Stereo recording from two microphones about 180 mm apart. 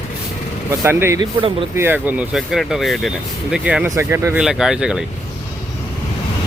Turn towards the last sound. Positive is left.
turn(degrees=-5)  # may be behind; listen again after turning